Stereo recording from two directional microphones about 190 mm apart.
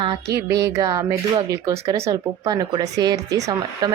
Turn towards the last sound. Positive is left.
turn(degrees=-20)  # may be behind; listen again after turning